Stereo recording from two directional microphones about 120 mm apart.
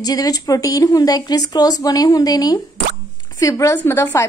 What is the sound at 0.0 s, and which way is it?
A woman's voice, 30° left (ahead or behind).